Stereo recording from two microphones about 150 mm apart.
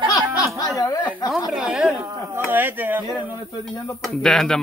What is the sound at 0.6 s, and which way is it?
Snicker, 25° left (ahead or behind).